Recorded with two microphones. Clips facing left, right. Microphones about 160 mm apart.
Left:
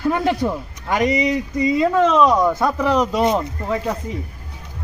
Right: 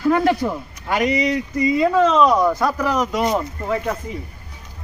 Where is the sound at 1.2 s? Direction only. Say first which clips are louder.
Even; centre (ahead or behind).